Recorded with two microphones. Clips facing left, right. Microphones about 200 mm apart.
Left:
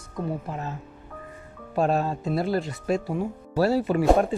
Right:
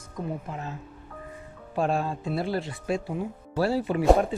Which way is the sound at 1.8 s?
40° left (ahead or behind).